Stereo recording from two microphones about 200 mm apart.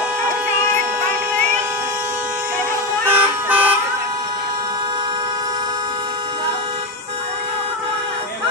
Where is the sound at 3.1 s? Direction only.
10° right (ahead or behind).